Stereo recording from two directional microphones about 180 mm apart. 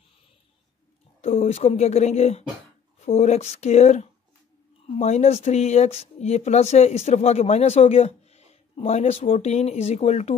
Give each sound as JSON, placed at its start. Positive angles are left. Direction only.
{"t": 1.2, "sound": "speech", "side_deg": 35}